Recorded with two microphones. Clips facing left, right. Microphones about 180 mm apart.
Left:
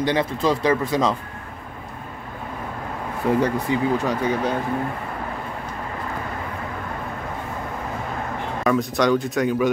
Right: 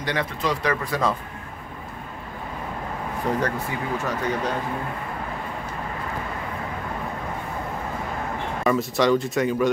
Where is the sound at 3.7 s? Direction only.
20° left (ahead or behind).